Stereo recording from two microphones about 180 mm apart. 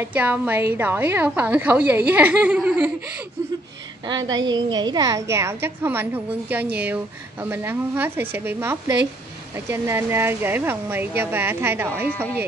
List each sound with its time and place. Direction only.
0.0 s a woman's voice: 10° right (ahead or behind)
4.1 s a woman's voice: 25° right (ahead or behind)